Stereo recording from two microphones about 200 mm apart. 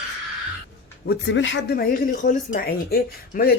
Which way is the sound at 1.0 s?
55° left (ahead or behind).